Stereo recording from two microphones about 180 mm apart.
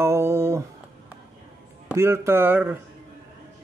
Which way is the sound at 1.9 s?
15° right (ahead or behind).